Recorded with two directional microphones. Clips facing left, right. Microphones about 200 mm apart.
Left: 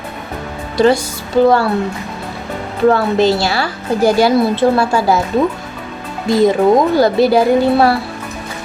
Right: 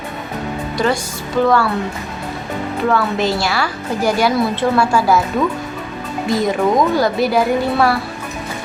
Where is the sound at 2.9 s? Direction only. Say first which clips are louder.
Left 6 dB; 30° left (ahead or behind).